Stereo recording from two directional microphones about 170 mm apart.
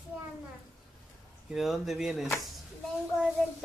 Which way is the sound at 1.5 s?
Centre (ahead or behind).